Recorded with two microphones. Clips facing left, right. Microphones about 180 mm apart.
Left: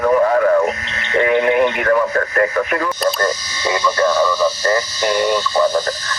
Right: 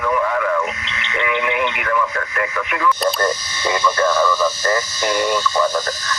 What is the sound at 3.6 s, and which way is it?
Speech, 25° left (ahead or behind).